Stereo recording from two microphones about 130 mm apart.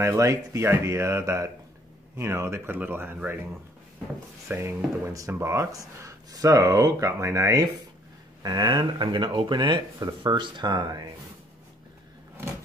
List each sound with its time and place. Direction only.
0.1 s speech: 25° right (ahead or behind)
4.5 s speech: 20° right (ahead or behind)